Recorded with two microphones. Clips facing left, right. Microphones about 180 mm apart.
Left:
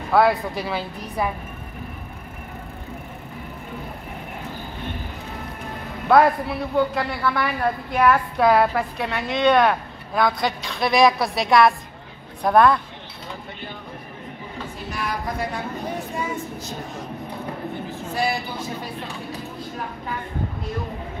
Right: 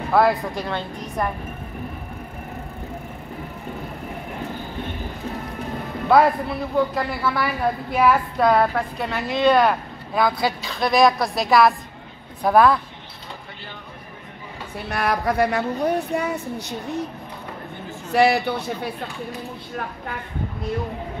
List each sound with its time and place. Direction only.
0.1 s a woman's voice: centre (ahead or behind)
6.0 s a woman's voice: centre (ahead or behind)
14.9 s speech: 65° right (ahead or behind)
18.1 s speech: 70° right (ahead or behind)